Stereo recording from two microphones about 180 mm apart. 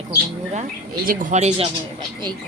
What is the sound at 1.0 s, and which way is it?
Speech, 50° right (ahead or behind).